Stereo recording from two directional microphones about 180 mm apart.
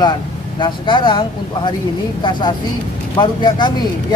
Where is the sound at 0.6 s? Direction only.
25° left (ahead or behind).